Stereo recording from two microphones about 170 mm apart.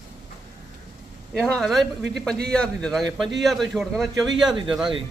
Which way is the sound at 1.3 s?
Centre (ahead or behind).